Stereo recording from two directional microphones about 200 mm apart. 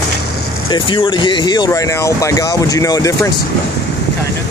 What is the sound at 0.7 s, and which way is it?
Speech, 25° left (ahead or behind).